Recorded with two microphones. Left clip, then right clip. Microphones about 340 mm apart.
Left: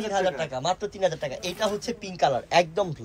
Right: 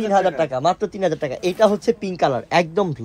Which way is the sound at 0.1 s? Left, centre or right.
Centre.